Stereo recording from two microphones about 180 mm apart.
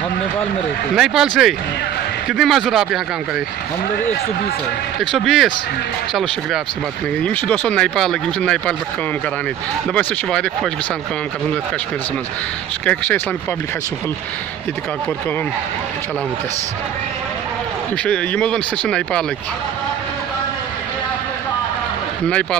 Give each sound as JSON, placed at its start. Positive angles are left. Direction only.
{"t": 0.9, "sound": "speech", "side_deg": -5}
{"t": 5.0, "sound": "speech", "side_deg": 0}
{"t": 9.9, "sound": "speech", "side_deg": 5}
{"t": 12.8, "sound": "speech", "side_deg": 10}
{"t": 18.0, "sound": "speech", "side_deg": 5}
{"t": 22.3, "sound": "speech", "side_deg": 5}